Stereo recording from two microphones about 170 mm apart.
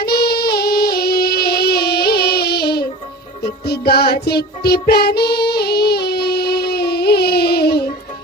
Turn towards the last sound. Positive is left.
turn(degrees=70)  # may be behind; listen again after turning